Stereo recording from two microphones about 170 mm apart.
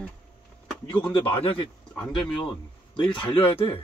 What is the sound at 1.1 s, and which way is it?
Speech, 30° left (ahead or behind).